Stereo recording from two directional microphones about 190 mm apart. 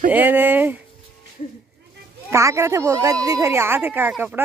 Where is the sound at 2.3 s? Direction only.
15° right (ahead or behind).